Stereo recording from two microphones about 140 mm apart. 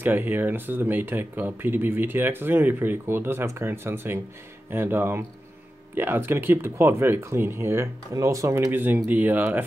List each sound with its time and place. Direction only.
0.0 s speech: 15° right (ahead or behind)